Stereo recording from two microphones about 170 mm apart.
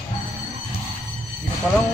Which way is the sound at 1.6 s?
Centre (ahead or behind).